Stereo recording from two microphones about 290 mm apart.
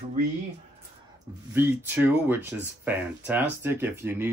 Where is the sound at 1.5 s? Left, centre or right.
Centre.